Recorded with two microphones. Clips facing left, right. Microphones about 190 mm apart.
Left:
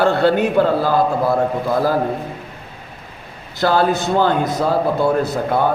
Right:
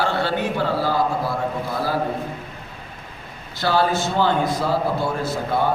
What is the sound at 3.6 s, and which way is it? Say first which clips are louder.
A man's voice: left 4 dB; 50° left (ahead or behind).